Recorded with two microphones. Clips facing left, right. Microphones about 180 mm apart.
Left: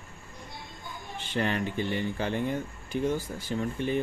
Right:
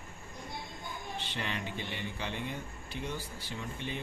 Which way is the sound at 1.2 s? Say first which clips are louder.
Left 11 dB; 50° left (ahead or behind).